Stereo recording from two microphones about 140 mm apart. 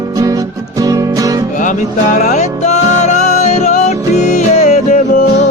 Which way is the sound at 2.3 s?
55° left (ahead or behind).